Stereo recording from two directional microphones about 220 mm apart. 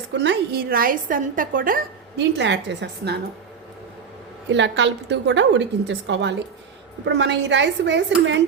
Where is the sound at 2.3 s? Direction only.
50° right (ahead or behind).